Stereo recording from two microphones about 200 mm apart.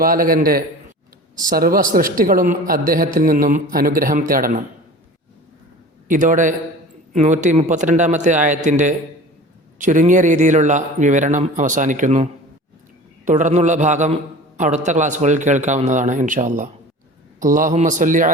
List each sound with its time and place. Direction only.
0.0 s a man's voice: 45° right (ahead or behind)
6.1 s a man's voice: 40° right (ahead or behind)